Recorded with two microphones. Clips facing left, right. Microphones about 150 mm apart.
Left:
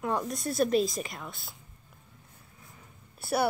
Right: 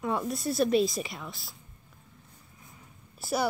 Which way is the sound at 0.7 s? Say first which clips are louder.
Right 2 dB; 45° left (ahead or behind).